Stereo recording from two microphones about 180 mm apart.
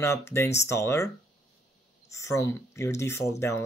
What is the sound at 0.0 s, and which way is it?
Speech, 15° left (ahead or behind).